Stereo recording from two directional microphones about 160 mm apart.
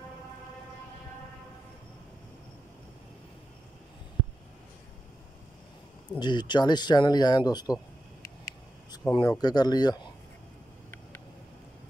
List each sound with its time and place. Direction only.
6.1 s speech: 30° left (ahead or behind)
8.5 s a sound: 20° left (ahead or behind)
9.1 s speech: 30° left (ahead or behind)